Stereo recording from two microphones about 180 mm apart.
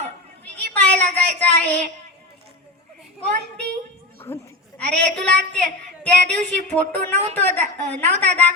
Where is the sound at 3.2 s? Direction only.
5° left (ahead or behind).